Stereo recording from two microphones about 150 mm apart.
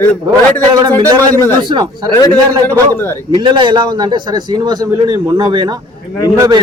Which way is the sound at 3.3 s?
30° right (ahead or behind).